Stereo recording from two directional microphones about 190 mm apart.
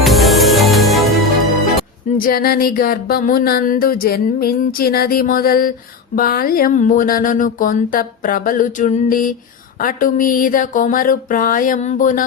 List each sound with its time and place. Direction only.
0.0 s music: centre (ahead or behind)
2.1 s music: 50° left (ahead or behind)